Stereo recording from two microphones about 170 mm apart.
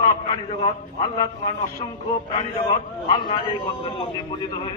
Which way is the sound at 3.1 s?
30° left (ahead or behind).